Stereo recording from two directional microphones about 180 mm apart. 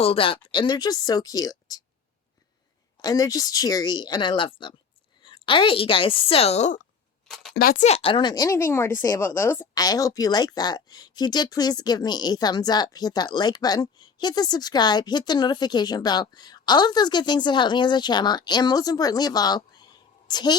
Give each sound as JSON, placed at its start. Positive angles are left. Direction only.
{"t": 0.0, "sound": "speech", "side_deg": 30}
{"t": 3.0, "sound": "speech", "side_deg": 20}
{"t": 7.3, "sound": "a sound", "side_deg": 0}
{"t": 7.5, "sound": "speech", "side_deg": 55}
{"t": 7.9, "sound": "speech", "side_deg": 30}